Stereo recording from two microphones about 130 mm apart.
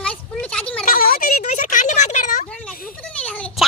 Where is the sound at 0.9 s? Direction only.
90° left; by 2.5 s 70° left (ahead or behind).